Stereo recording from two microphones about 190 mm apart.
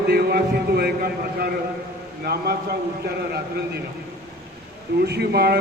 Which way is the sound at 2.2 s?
55° right (ahead or behind).